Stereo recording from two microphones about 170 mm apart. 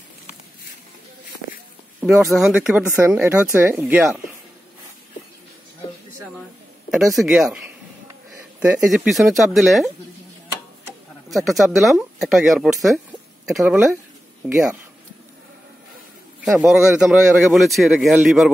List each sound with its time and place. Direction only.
1.4 s a sound: 75° left (ahead or behind)
2.0 s a sound: 5° right (ahead or behind)
2.3 s speech: 5° right (ahead or behind)
7.2 s a man's voice: centre (ahead or behind)
11.2 s a man's voice: centre (ahead or behind)
16.4 s a man's voice: centre (ahead or behind)